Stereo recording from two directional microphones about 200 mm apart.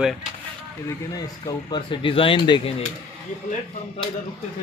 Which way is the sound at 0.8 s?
20° left (ahead or behind).